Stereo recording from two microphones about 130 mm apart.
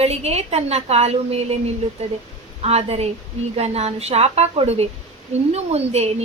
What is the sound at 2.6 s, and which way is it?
A woman's voice, 55° right (ahead or behind).